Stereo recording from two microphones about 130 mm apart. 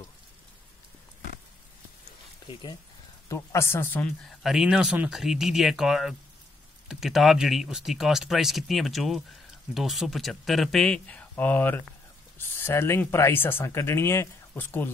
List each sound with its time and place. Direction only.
3.3 s speech: 20° left (ahead or behind)